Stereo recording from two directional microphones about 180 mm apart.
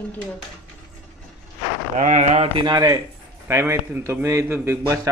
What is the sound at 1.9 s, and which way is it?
A man's voice, 45° right (ahead or behind).